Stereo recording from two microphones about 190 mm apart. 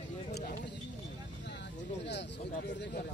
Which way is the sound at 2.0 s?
65° left (ahead or behind).